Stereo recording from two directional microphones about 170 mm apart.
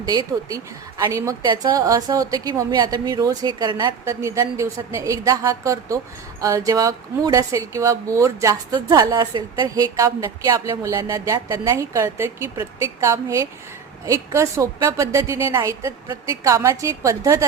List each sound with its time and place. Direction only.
0.0 s a woman's voice: 25° right (ahead or behind)